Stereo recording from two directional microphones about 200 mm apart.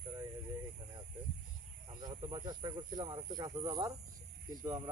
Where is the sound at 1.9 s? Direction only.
20° right (ahead or behind).